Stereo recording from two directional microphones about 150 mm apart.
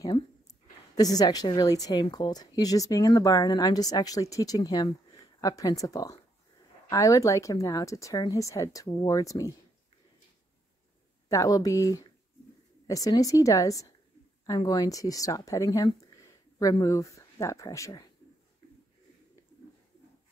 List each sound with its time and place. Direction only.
0.0 s speech: 25° left (ahead or behind)
11.2 s speech: 25° left (ahead or behind)